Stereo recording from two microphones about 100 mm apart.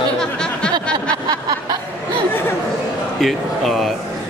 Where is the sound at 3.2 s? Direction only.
Centre (ahead or behind).